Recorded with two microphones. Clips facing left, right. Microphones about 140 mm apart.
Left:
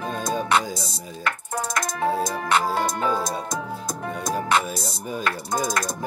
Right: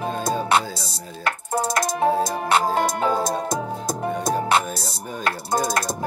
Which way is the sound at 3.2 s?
30° right (ahead or behind).